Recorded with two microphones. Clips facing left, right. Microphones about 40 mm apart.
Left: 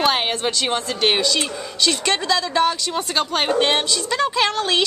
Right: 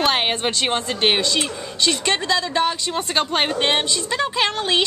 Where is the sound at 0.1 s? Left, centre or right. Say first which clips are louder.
Even; right.